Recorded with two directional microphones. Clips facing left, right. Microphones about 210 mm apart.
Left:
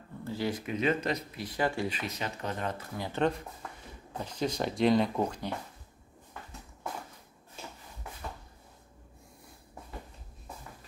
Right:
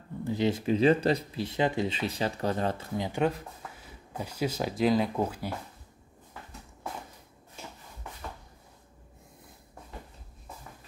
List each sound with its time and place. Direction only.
0.2 s speech: 20° right (ahead or behind)
3.0 s speech: 10° right (ahead or behind)